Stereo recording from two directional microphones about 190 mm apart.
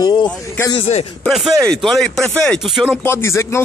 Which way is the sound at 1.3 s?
Centre (ahead or behind).